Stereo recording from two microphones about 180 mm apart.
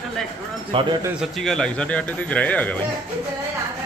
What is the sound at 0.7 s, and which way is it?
Speech, 30° right (ahead or behind).